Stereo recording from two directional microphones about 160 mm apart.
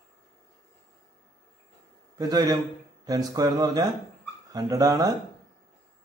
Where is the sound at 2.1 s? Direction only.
25° right (ahead or behind).